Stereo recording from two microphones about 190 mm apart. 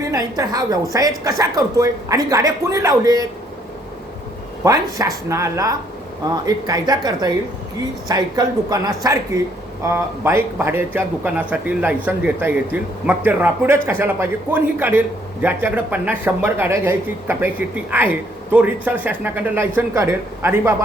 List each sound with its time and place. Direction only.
0.1 s a woman's voice: 20° right (ahead or behind)
4.6 s a man's voice: 20° right (ahead or behind)